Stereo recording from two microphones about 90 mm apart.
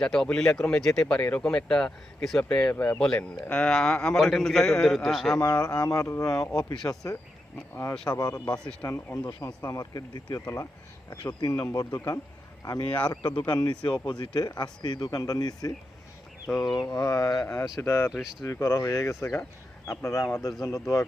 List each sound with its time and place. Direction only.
0.0 s a man's voice: 5° left (ahead or behind)
5.4 s speech: 45° left (ahead or behind)
10.4 s speech: 35° left (ahead or behind)
11.3 s speech: 50° left (ahead or behind)
13.1 s speech: 50° left (ahead or behind)
16.5 s a man's voice: 5° left (ahead or behind)
16.8 s speech: 35° left (ahead or behind)
17.4 s speech: 25° left (ahead or behind)
18.1 s a man's voice: centre (ahead or behind)
18.4 s speech: 35° left (ahead or behind)